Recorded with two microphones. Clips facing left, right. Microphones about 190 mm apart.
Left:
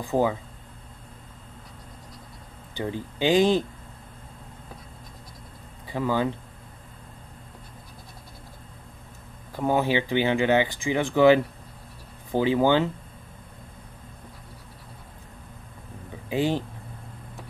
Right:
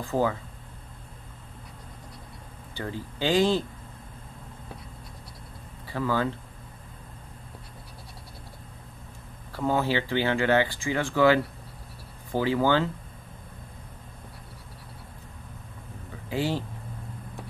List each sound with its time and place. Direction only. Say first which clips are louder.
0.0 s speech: left 2 dB; 15° left (ahead or behind)
2.7 s speech: left 4 dB; 15° left (ahead or behind)
5.9 s speech: left 2 dB; 20° left (ahead or behind)
9.5 s speech: left 2 dB; 15° left (ahead or behind)
16.3 s speech: left 3 dB; 20° left (ahead or behind)